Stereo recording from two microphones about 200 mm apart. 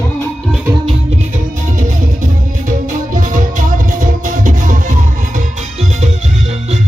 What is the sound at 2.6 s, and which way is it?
Music, 40° right (ahead or behind).